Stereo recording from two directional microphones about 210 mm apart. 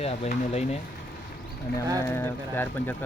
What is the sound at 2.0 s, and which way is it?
Speech, 10° left (ahead or behind).